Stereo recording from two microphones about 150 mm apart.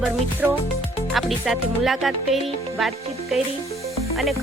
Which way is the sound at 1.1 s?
Centre (ahead or behind).